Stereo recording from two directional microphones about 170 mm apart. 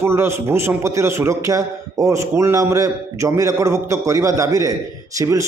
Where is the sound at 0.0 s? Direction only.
15° right (ahead or behind).